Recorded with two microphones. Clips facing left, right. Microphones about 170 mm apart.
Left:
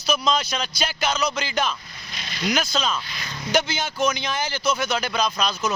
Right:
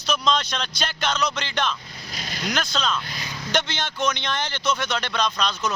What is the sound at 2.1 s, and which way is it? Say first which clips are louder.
Vehicle: right 3 dB; 45° right (ahead or behind).